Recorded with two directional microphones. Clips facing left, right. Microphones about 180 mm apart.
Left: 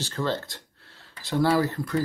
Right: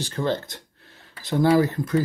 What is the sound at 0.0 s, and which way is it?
Speech, 15° right (ahead or behind).